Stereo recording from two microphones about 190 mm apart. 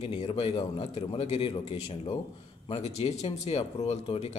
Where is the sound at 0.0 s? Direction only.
30° left (ahead or behind).